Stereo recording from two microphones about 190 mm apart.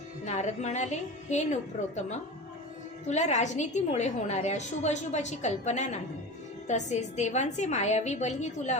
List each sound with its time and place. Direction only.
0.3 s a woman's voice: 35° left (ahead or behind)
3.1 s a woman's voice: 40° left (ahead or behind)